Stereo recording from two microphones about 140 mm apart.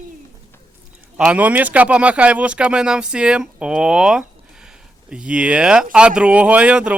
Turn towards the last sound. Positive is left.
turn(degrees=-10)  # may be behind; listen again after turning